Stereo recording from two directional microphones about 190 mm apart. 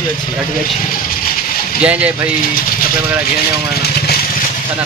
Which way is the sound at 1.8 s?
5° right (ahead or behind).